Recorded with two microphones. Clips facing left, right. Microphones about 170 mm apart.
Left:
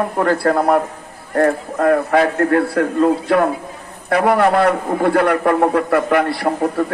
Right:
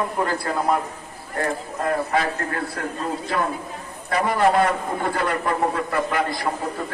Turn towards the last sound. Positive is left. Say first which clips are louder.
# left 7 dB
turn(degrees=65)  # may be behind; listen again after turning